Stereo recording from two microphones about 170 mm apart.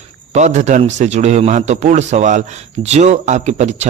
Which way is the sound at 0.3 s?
45° right (ahead or behind).